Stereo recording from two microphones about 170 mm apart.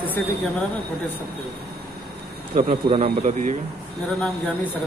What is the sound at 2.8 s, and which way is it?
Speech, 40° right (ahead or behind).